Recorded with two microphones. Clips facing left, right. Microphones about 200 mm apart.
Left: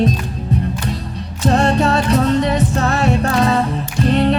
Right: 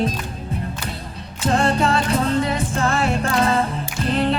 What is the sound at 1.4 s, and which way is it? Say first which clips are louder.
Music: left 4 dB; 40° left (ahead or behind).